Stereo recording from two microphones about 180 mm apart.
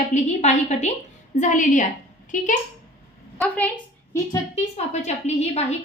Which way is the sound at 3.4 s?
10° left (ahead or behind).